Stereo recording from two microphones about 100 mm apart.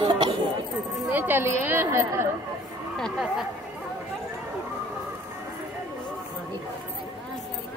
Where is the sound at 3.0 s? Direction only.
5° left (ahead or behind).